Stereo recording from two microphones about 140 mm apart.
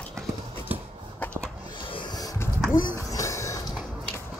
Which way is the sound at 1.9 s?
25° left (ahead or behind).